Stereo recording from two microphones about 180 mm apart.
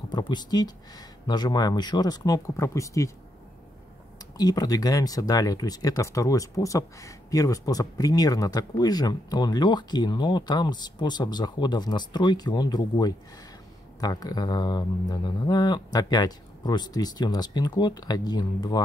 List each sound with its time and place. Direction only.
0.1 s speech: 25° left (ahead or behind)
4.4 s speech: 20° left (ahead or behind)